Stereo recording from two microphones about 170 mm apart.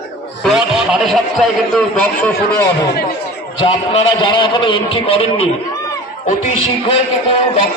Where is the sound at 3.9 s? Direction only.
25° left (ahead or behind).